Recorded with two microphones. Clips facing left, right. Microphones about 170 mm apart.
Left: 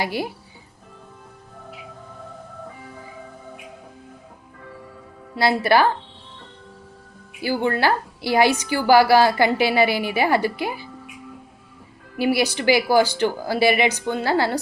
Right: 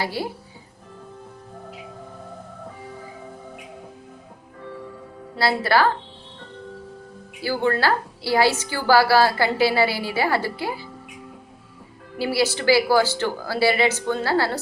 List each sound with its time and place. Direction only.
0.0 s a woman's voice: 15° left (ahead or behind)
5.4 s a woman's voice: 20° left (ahead or behind)
7.4 s a woman's voice: 15° left (ahead or behind)
12.2 s a woman's voice: 15° left (ahead or behind)